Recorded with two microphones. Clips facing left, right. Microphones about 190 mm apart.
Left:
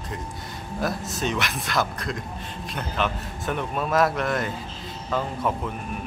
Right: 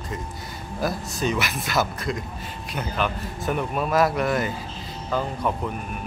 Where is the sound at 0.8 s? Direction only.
Centre (ahead or behind).